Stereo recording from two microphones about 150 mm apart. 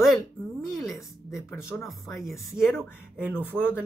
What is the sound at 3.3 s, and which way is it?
Speech, 10° left (ahead or behind).